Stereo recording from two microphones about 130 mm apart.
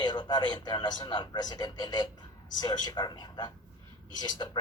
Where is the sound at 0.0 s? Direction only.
35° left (ahead or behind).